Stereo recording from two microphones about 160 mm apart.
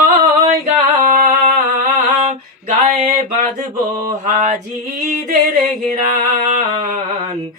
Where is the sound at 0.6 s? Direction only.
55° right (ahead or behind).